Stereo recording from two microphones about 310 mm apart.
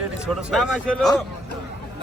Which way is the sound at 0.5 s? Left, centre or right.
Centre.